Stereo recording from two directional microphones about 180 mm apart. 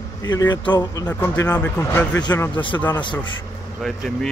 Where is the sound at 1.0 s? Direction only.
15° left (ahead or behind).